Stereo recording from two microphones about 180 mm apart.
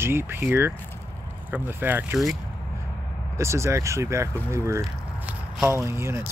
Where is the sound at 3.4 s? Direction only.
15° right (ahead or behind).